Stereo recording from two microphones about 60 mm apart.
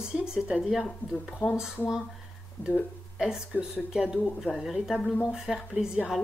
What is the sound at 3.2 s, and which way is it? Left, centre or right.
Speech, centre.